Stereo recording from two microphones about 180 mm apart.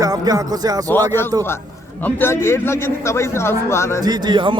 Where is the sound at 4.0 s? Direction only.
25° right (ahead or behind).